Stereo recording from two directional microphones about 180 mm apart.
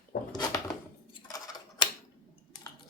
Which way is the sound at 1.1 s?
20° left (ahead or behind).